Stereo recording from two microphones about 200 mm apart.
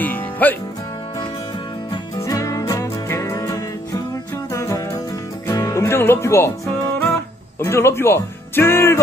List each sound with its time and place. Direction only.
0.0 s music: 10° left (ahead or behind)
2.1 s music: 15° left (ahead or behind)
7.6 s speech: 10° left (ahead or behind)